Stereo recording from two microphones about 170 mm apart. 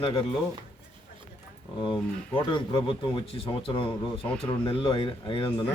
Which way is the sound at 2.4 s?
30° left (ahead or behind).